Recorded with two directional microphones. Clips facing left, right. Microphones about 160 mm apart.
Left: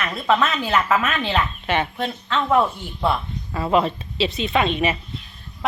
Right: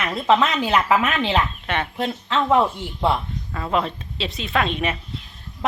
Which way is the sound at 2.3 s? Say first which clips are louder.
Right 1 dB; 15° right (ahead or behind).